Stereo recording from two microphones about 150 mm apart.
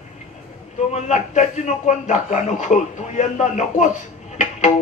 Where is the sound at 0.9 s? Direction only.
50° left (ahead or behind).